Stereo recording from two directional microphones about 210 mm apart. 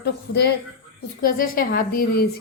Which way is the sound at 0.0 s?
50° left (ahead or behind).